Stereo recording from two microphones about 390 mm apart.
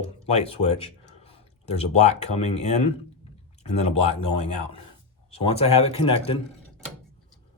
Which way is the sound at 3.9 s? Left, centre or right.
Centre.